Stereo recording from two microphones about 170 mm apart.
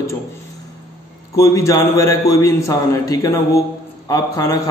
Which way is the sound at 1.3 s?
15° left (ahead or behind).